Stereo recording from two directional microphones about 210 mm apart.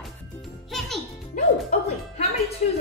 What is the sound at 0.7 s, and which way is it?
Music, centre (ahead or behind).